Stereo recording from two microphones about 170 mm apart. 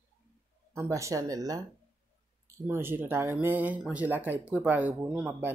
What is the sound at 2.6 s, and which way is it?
Speech, 15° right (ahead or behind).